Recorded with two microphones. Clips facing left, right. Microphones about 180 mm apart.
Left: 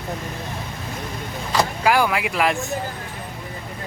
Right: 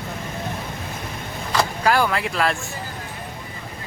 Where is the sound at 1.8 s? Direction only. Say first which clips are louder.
Even; 10° left (ahead or behind).